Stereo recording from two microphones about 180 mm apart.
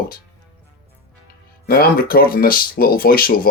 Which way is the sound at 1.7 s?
55° left (ahead or behind).